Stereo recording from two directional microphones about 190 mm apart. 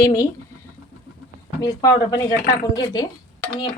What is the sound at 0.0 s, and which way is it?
Speech, 20° left (ahead or behind).